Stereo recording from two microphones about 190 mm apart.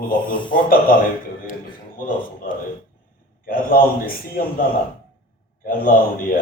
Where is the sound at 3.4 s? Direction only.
50° left (ahead or behind).